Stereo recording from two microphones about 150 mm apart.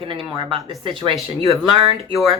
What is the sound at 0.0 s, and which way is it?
Speech, 35° right (ahead or behind).